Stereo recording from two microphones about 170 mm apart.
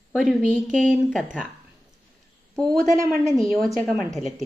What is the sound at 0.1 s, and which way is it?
A woman's voice, centre (ahead or behind).